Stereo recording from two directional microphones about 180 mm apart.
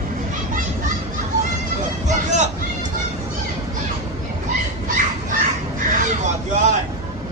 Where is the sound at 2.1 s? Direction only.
40° right (ahead or behind).